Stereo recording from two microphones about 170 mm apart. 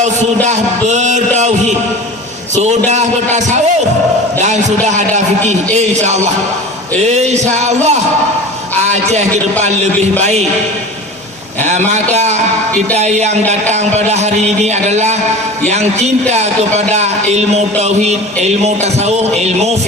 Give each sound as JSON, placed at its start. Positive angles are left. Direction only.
{"t": 0.4, "sound": "speech", "side_deg": -45}
{"t": 2.6, "sound": "speech", "side_deg": -40}
{"t": 4.9, "sound": "speech", "side_deg": -45}
{"t": 9.8, "sound": "speech", "side_deg": -40}
{"t": 11.9, "sound": "speech", "side_deg": -40}
{"t": 16.3, "sound": "speech", "side_deg": -40}